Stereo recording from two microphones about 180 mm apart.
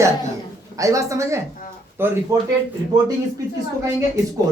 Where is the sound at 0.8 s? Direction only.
15° right (ahead or behind).